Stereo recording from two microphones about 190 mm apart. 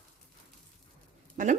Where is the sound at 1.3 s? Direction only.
45° right (ahead or behind).